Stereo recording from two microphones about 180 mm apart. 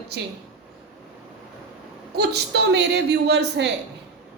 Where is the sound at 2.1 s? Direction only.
65° right (ahead or behind).